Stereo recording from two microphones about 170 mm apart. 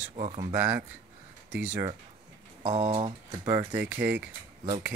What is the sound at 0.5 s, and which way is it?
Speech, 15° right (ahead or behind).